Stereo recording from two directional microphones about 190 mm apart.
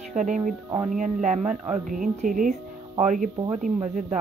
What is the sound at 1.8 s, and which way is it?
Speech, 45° right (ahead or behind).